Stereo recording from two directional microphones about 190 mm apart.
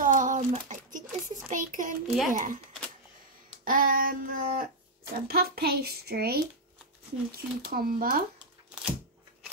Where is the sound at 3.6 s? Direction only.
45° right (ahead or behind).